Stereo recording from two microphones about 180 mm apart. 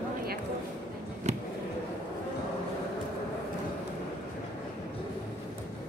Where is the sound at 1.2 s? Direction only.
40° right (ahead or behind).